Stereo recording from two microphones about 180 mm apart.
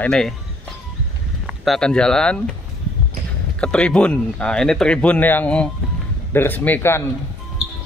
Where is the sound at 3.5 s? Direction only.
5° left (ahead or behind).